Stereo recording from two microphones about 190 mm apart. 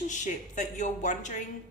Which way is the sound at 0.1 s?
40° left (ahead or behind).